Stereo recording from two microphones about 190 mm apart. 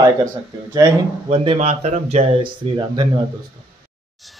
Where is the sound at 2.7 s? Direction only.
25° right (ahead or behind).